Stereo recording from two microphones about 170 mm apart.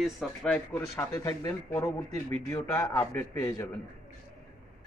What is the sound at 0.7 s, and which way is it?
Speech, 15° left (ahead or behind).